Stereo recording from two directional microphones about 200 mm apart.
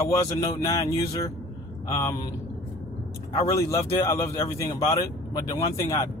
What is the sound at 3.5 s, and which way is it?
Speech, 15° left (ahead or behind).